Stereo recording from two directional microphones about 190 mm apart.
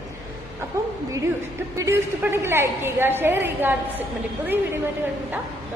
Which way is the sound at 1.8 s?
15° right (ahead or behind).